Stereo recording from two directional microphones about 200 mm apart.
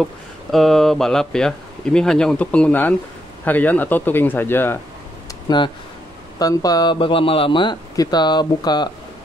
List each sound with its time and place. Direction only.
0.0 s speech: centre (ahead or behind)
6.3 s speech: 20° left (ahead or behind)